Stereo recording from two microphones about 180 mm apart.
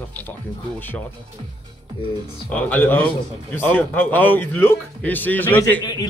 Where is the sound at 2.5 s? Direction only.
10° left (ahead or behind).